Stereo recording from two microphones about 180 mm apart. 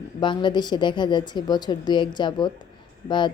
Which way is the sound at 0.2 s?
25° left (ahead or behind).